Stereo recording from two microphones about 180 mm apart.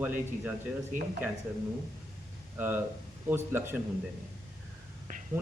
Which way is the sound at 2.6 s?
10° right (ahead or behind).